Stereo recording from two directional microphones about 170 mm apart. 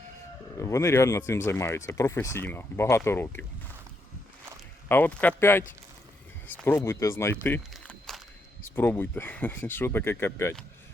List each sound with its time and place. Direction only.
0.5 s speech: 20° left (ahead or behind)
4.9 s speech: 10° left (ahead or behind)
7.4 s a sound: 10° left (ahead or behind)
8.7 s speech: 10° left (ahead or behind)